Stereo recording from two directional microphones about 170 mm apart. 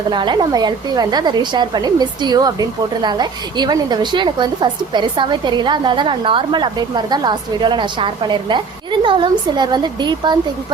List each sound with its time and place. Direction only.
0.1 s a woman's voice: 25° right (ahead or behind)